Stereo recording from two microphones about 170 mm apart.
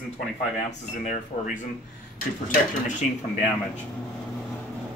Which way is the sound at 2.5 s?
45° left (ahead or behind).